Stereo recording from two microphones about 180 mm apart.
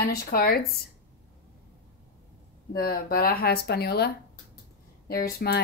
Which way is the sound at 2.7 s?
55° left (ahead or behind).